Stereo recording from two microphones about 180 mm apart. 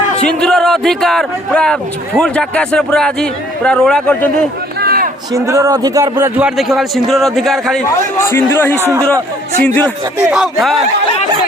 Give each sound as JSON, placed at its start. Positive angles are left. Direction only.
{"t": 0.3, "sound": "a man's voice", "side_deg": 5}
{"t": 4.8, "sound": "a sound", "side_deg": -60}
{"t": 5.3, "sound": "a man's voice", "side_deg": -15}
{"t": 7.9, "sound": "speech", "side_deg": 15}
{"t": 8.7, "sound": "a man's voice", "side_deg": -15}
{"t": 9.6, "sound": "speech", "side_deg": 10}
{"t": 10.2, "sound": "a man's voice", "side_deg": -5}